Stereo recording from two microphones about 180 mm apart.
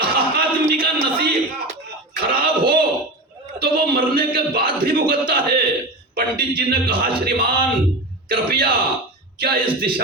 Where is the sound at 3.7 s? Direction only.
55° right (ahead or behind).